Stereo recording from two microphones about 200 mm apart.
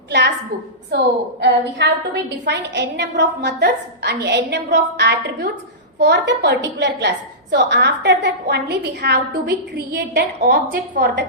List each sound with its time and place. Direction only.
0.1 s a sound: 65° right (ahead or behind)
0.9 s a woman's voice: 55° right (ahead or behind)
10.4 s a woman's voice: 40° right (ahead or behind)